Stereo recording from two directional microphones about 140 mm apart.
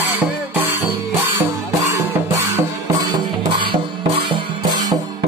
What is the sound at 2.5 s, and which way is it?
Music, 30° right (ahead or behind).